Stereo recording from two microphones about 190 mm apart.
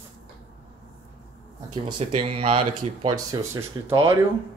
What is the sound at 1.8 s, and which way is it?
Speech, 25° right (ahead or behind).